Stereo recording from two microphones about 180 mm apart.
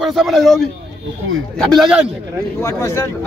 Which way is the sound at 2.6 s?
15° left (ahead or behind).